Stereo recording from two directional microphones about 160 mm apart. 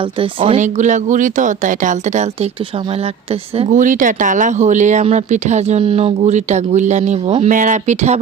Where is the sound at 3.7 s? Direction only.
55° right (ahead or behind).